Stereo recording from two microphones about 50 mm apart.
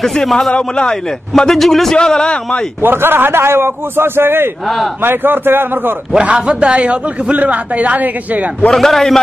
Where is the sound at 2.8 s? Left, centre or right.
Right.